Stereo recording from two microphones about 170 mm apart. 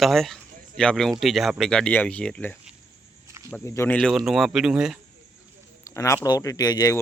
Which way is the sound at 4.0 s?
Centre (ahead or behind).